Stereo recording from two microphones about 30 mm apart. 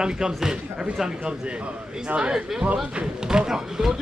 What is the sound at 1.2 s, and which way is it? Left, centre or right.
Speech, right.